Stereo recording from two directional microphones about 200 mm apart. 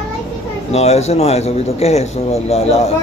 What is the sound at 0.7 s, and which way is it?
Speech, 30° left (ahead or behind).